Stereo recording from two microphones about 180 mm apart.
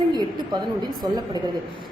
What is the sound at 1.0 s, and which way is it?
Speech, 20° right (ahead or behind).